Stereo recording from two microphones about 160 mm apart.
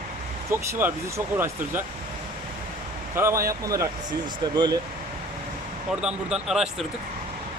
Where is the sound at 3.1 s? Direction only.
15° right (ahead or behind).